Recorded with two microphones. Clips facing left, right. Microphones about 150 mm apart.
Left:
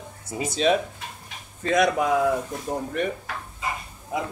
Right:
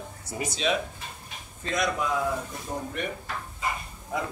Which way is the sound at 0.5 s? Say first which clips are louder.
Left 7 dB; 45° left (ahead or behind).